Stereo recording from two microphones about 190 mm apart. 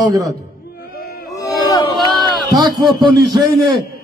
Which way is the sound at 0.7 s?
55° left (ahead or behind).